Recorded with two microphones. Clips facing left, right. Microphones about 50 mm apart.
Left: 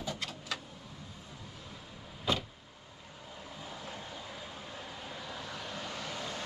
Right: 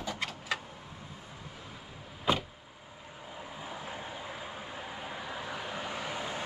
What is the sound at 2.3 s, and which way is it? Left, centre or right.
Vehicle, centre.